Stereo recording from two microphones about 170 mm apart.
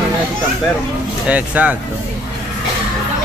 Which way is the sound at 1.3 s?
10° right (ahead or behind).